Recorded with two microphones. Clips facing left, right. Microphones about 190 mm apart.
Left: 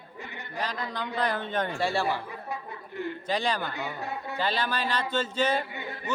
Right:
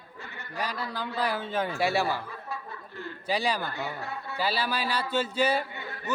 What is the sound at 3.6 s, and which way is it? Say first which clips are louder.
Speech: left 1 dB; 15° left (ahead or behind).